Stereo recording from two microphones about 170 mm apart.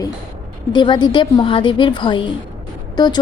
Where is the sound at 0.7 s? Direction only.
25° left (ahead or behind).